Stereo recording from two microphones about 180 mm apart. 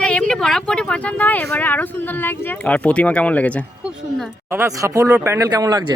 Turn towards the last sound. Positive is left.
turn(degrees=-20)  # may be behind; listen again after turning